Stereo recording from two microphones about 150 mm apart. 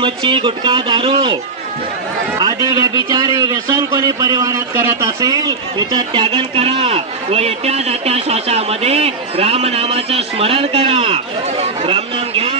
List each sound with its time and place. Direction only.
0.0 s a man's voice: 35° right (ahead or behind)
2.3 s a man's voice: 25° right (ahead or behind); by 12.5 s 40° right (ahead or behind)